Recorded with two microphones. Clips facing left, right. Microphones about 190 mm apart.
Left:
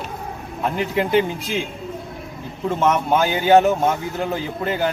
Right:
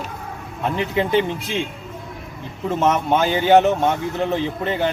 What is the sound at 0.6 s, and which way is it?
A man's voice, centre (ahead or behind).